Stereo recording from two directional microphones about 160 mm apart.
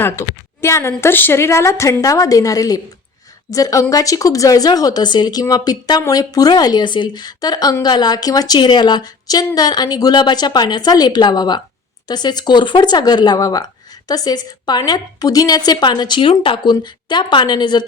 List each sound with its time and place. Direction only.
0.6 s a woman's voice: 15° left (ahead or behind)